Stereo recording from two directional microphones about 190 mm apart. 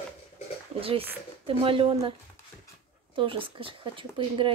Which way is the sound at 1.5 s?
30° right (ahead or behind).